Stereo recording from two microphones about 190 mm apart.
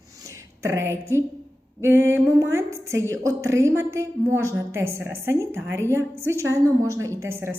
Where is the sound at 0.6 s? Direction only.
15° right (ahead or behind).